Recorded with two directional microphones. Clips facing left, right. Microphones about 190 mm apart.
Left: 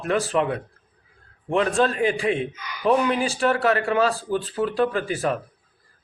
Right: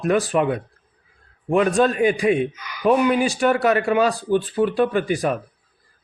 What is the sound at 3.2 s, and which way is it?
Speech, 15° right (ahead or behind).